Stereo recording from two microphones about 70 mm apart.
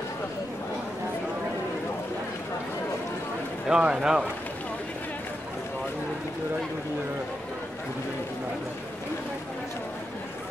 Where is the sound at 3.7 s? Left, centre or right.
Centre.